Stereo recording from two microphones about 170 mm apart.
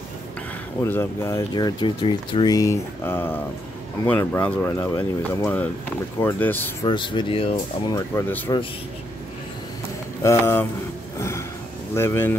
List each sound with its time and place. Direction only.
0.8 s speech: 15° left (ahead or behind)
1.5 s speech: 25° left (ahead or behind)
6.9 s speech: 30° left (ahead or behind)
7.9 s speech: 10° left (ahead or behind)
10.2 s speech: 15° left (ahead or behind)
11.1 s a sound: 15° left (ahead or behind)
11.9 s speech: 15° left (ahead or behind)